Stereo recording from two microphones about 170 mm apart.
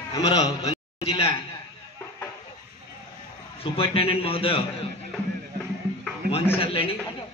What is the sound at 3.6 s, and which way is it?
A man's voice, 35° left (ahead or behind).